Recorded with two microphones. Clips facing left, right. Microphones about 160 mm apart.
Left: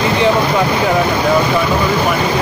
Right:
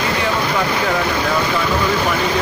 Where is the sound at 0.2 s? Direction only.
20° left (ahead or behind).